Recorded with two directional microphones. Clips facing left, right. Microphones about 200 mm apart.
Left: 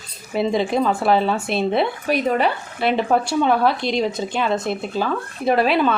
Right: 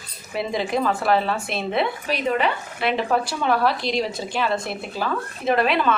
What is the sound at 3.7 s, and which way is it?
Speech, centre (ahead or behind).